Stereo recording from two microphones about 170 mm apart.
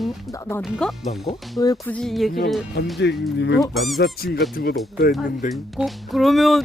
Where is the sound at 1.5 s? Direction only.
20° left (ahead or behind).